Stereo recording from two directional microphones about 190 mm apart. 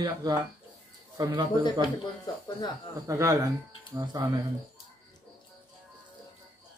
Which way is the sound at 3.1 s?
15° right (ahead or behind).